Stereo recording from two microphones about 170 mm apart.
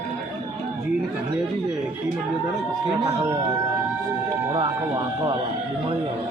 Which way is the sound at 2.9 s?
25° right (ahead or behind).